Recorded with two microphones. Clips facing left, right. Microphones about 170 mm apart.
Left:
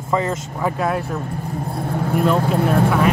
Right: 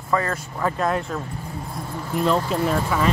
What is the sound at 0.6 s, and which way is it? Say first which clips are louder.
Speech: left 1 dB; 10° left (ahead or behind).